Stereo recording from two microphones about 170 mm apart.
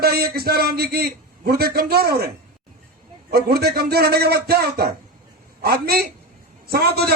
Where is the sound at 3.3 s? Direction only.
65° right (ahead or behind).